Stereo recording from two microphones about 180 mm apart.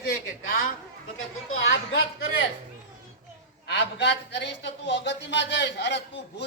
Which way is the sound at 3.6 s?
75° left (ahead or behind).